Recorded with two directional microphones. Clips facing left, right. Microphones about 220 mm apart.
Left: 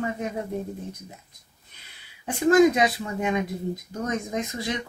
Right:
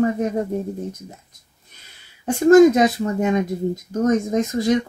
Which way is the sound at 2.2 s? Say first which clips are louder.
Right 7 dB; 45° right (ahead or behind).